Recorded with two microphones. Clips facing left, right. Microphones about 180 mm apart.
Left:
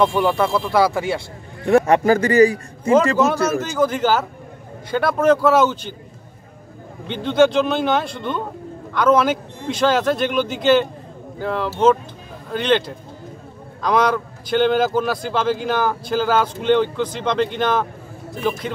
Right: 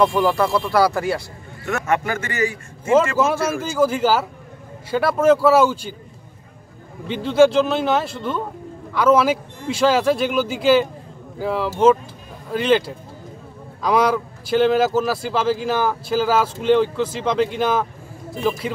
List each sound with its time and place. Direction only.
0.0 s a man's voice: centre (ahead or behind)
1.7 s a man's voice: 35° left (ahead or behind)
3.2 s speech: 5° right (ahead or behind)
7.1 s a man's voice: 5° right (ahead or behind)